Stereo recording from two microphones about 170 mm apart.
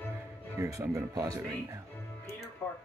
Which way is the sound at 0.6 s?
20° right (ahead or behind).